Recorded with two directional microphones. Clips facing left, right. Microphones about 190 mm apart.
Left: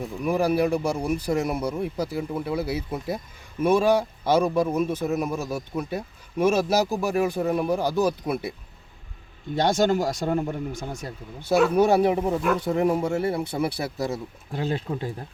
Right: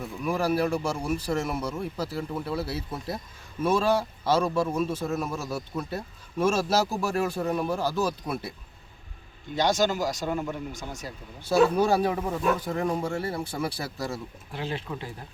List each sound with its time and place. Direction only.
0.0 s speech: 15° left (ahead or behind)
9.6 s speech: 55° left (ahead or behind)
11.4 s speech: 20° left (ahead or behind)
14.5 s speech: 45° left (ahead or behind)